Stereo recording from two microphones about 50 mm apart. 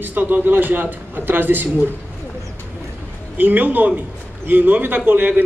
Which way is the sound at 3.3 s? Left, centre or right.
Right.